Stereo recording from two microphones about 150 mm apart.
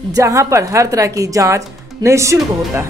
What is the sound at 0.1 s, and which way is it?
Speech, 20° right (ahead or behind).